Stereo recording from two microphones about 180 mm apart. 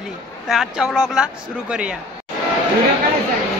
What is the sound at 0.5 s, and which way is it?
Speech, 5° right (ahead or behind).